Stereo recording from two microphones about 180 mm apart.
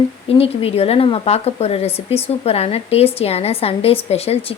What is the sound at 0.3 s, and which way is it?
A woman's voice, 35° left (ahead or behind).